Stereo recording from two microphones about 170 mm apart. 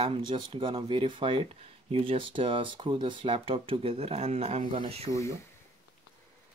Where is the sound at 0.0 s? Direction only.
30° right (ahead or behind).